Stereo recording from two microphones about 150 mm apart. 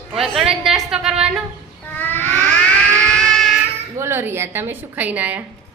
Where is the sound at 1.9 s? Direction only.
15° left (ahead or behind).